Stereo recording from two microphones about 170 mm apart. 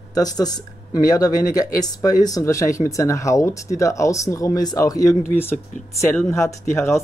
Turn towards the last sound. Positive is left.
turn(degrees=15)  # may be behind; listen again after turning